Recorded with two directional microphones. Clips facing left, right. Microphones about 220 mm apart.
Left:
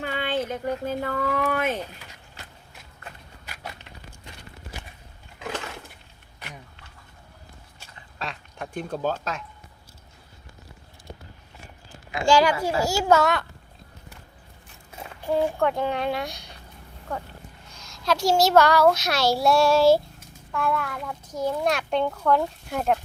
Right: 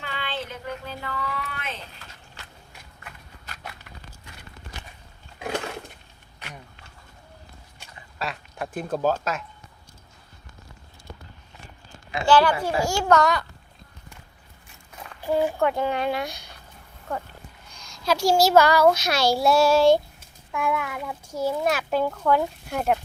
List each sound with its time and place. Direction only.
0.0 s speech: 45° left (ahead or behind)
8.2 s duck: 5° right (ahead or behind)
12.2 s a child's voice: 10° left (ahead or behind)
15.3 s a child's voice: 5° right (ahead or behind)
20.5 s a child's voice: 10° right (ahead or behind)